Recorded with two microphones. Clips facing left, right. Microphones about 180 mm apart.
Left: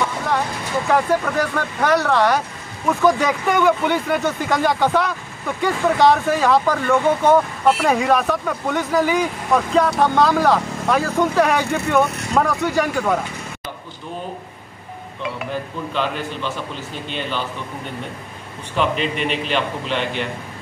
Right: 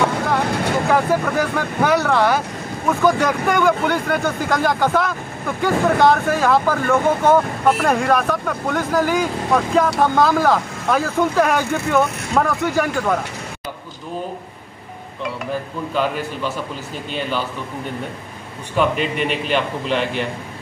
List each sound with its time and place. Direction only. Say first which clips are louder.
0.5 s vehicle: right 8 dB; 65° right (ahead or behind)
0.8 s speech: left 2 dB; centre (ahead or behind)
18.8 s speech: right 2 dB; 5° right (ahead or behind)